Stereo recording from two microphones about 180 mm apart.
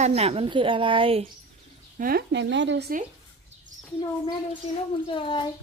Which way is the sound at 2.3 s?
90° right.